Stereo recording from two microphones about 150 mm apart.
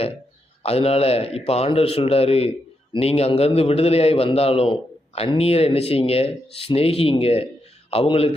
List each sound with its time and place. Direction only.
0.6 s a man's voice: 40° left (ahead or behind)